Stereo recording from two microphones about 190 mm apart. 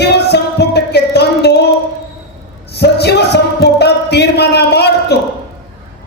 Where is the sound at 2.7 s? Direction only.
60° left (ahead or behind).